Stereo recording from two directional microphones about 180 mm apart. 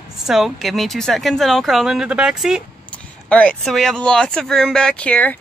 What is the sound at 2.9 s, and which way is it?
Speech, 5° left (ahead or behind).